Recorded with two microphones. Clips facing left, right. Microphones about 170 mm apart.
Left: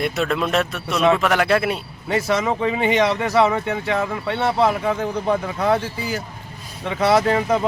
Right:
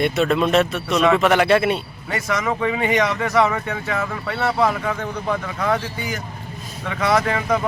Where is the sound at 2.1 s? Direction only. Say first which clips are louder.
Left 3 dB; 25° left (ahead or behind).